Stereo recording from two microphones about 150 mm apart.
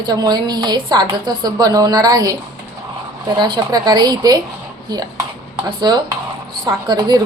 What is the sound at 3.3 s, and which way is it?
A woman's voice, 30° right (ahead or behind).